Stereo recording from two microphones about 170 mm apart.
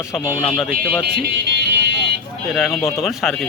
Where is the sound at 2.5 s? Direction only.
Centre (ahead or behind).